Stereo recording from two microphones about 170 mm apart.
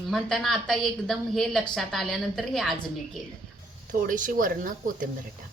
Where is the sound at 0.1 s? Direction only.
Centre (ahead or behind).